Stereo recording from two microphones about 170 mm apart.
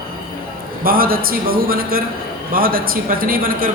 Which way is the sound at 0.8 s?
60° right (ahead or behind).